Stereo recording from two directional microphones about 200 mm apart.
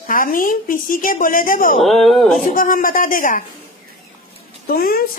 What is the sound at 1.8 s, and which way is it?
Speech, centre (ahead or behind).